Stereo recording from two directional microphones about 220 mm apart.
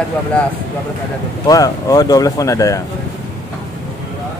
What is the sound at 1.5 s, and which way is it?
Speech, 15° left (ahead or behind).